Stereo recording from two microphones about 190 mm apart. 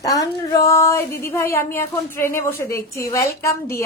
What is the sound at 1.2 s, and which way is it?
A woman's voice, 15° left (ahead or behind).